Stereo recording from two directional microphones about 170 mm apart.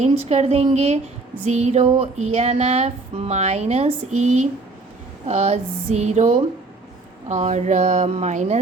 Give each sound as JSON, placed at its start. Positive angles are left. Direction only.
{"t": 0.0, "sound": "speech", "side_deg": -40}